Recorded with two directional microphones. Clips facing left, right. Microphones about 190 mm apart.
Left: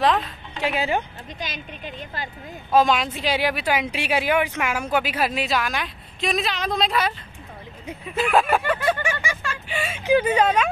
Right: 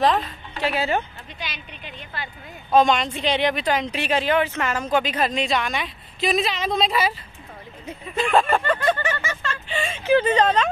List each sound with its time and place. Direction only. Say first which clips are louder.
0.0 s speech: right 1 dB; centre (ahead or behind)
0.6 s speech: even; 15° left (ahead or behind)
1.4 s a woman's voice: left 3 dB; 45° left (ahead or behind)
2.7 s speech: right 1 dB; 5° left (ahead or behind)